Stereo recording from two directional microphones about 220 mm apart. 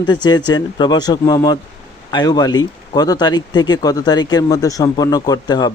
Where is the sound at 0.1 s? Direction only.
20° left (ahead or behind).